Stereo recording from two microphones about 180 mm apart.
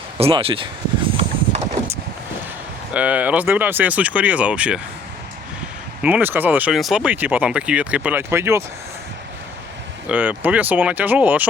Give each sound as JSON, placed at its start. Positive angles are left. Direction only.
{"t": 0.2, "sound": "speech", "side_deg": -30}
{"t": 1.1, "sound": "horse", "side_deg": -30}
{"t": 2.9, "sound": "speech", "side_deg": -10}
{"t": 6.0, "sound": "speech", "side_deg": -10}
{"t": 10.1, "sound": "speech", "side_deg": -10}